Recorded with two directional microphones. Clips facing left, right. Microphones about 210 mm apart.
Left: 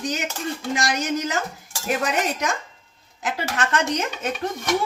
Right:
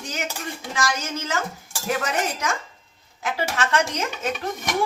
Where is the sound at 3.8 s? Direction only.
20° left (ahead or behind).